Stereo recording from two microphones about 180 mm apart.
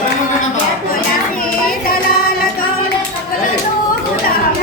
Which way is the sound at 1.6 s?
55° left (ahead or behind).